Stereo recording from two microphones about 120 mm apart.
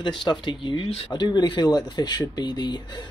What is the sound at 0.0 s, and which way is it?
Speech, 40° left (ahead or behind).